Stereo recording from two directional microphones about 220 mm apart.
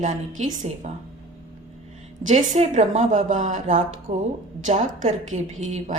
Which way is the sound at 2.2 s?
30° right (ahead or behind).